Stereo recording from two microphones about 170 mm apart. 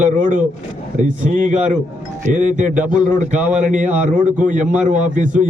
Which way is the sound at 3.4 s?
5° right (ahead or behind).